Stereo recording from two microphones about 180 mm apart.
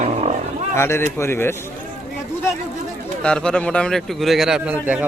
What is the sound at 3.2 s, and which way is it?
A man's voice, 5° left (ahead or behind).